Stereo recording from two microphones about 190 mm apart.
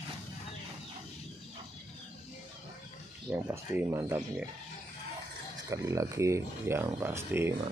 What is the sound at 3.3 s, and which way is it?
Speech, 10° right (ahead or behind).